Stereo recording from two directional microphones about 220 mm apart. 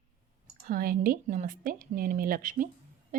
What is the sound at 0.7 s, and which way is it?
Speech, 40° right (ahead or behind).